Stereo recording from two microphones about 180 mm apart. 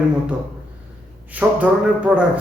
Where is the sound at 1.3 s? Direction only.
10° right (ahead or behind).